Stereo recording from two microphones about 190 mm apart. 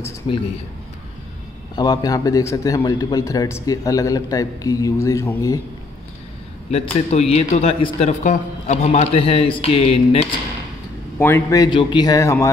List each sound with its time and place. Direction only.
0.3 s a man's voice: 25° left (ahead or behind)
1.8 s a man's voice: 20° left (ahead or behind)
6.7 s a man's voice: 35° left (ahead or behind)
11.1 s a man's voice: 10° left (ahead or behind)